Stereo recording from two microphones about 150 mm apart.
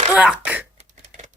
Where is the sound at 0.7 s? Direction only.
50° right (ahead or behind).